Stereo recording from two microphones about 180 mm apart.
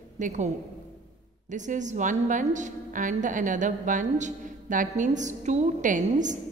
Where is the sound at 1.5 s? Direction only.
45° right (ahead or behind).